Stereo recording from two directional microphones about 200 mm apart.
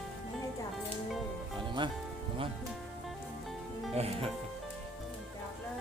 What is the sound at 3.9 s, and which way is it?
Speech, 30° right (ahead or behind).